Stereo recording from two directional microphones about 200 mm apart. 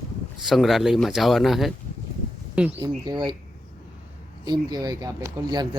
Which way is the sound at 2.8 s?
20° right (ahead or behind).